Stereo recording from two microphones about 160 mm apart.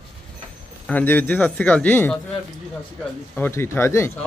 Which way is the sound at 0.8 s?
10° left (ahead or behind).